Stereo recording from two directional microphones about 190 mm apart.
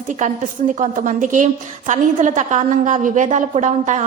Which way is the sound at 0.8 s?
40° right (ahead or behind).